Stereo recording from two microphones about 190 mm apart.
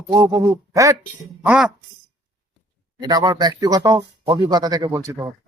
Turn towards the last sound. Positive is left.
turn(degrees=-15)  # may be behind; listen again after turning